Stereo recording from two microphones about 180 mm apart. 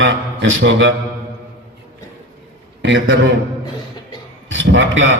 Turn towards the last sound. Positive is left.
turn(degrees=-90)